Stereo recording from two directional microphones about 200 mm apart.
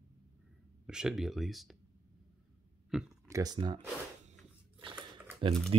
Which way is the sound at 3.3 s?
20° right (ahead or behind).